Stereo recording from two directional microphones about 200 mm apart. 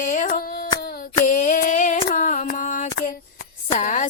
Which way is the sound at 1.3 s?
40° left (ahead or behind).